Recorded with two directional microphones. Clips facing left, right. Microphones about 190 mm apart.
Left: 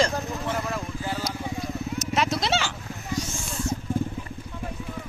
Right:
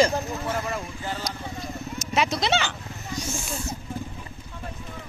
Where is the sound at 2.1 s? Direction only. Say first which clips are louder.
Right 2 dB; centre (ahead or behind).